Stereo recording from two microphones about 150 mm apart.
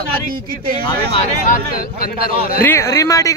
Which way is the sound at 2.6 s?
15° left (ahead or behind).